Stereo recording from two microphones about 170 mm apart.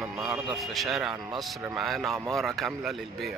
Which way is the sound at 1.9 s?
Centre (ahead or behind).